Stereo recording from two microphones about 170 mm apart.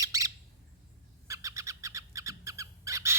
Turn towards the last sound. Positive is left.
turn(degrees=-15)  # may be behind; listen again after turning